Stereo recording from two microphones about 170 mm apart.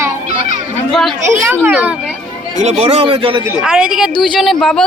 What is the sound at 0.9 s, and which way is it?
Speech, centre (ahead or behind).